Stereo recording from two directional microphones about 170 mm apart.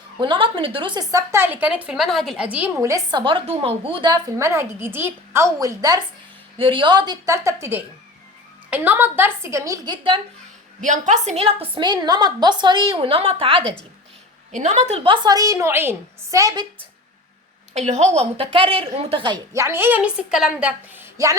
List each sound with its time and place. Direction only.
0.2 s a woman's voice: 30° right (ahead or behind)
10.8 s a woman's voice: 50° right (ahead or behind)
14.5 s a woman's voice: 45° right (ahead or behind); by 16.6 s 20° right (ahead or behind)
17.7 s a woman's voice: 45° right (ahead or behind)
19.5 s a woman's voice: 15° right (ahead or behind)